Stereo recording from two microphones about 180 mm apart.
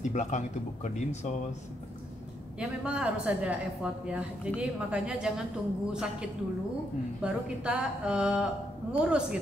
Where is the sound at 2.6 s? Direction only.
5° right (ahead or behind).